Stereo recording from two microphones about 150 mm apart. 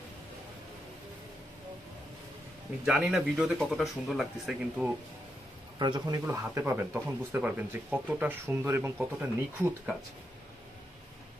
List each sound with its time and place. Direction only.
2.8 s speech: 5° right (ahead or behind)
5.8 s speech: 25° right (ahead or behind); by 9.9 s 10° right (ahead or behind)